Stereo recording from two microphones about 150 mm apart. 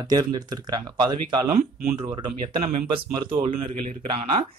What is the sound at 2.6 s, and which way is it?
Speech, 45° right (ahead or behind).